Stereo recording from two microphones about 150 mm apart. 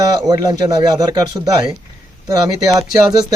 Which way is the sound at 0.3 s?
25° right (ahead or behind).